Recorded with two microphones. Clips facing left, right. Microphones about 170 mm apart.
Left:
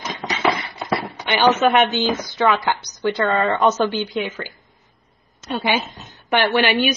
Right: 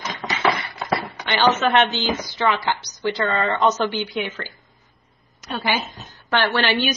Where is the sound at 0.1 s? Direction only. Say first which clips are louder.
Left 2 dB; centre (ahead or behind).